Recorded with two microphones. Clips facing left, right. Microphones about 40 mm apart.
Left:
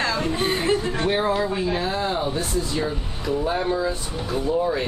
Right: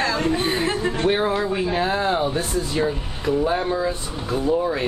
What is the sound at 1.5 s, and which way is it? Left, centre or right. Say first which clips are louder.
Speech: right 2 dB; right.